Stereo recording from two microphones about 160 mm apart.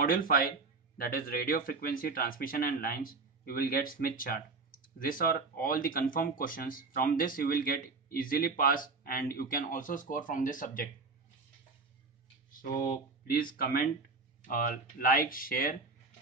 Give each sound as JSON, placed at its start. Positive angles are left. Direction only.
{"t": 0.0, "sound": "speech", "side_deg": 65}
{"t": 12.8, "sound": "speech", "side_deg": 65}